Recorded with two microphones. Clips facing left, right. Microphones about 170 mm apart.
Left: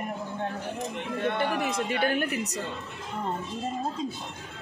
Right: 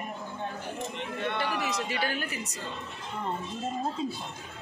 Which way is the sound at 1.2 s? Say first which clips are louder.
Left 4 dB; 50° left (ahead or behind).